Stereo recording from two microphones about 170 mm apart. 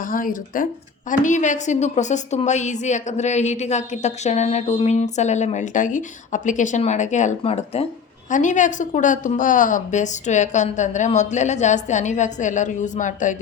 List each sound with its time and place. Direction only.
0.0 s a woman's voice: 55° left (ahead or behind); by 7.9 s 35° left (ahead or behind)
8.3 s a woman's voice: 45° left (ahead or behind)